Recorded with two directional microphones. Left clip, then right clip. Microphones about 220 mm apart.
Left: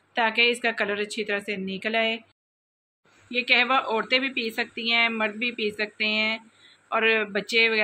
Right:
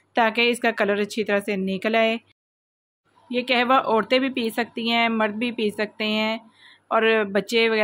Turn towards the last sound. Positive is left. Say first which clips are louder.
# right 2 dB
turn(degrees=-50)  # may be behind; listen again after turning